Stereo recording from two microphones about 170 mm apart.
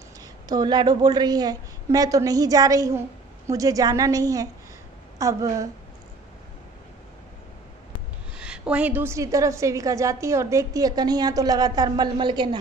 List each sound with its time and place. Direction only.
0.5 s a woman's voice: 25° right (ahead or behind)
8.4 s a woman's voice: 5° right (ahead or behind); by 12.4 s 25° right (ahead or behind)